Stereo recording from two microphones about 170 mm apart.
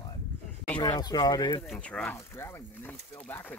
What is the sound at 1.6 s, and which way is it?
Speech, 5° left (ahead or behind).